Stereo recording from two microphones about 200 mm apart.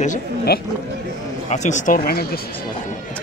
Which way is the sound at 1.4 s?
35° left (ahead or behind).